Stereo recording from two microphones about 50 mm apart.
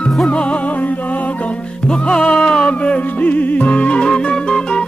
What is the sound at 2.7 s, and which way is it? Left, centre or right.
Music, left.